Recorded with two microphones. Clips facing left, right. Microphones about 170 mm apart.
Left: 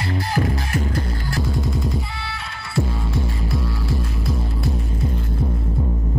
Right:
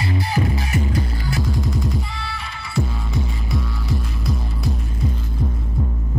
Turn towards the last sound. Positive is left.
turn(degrees=0)  # may be behind; listen again after turning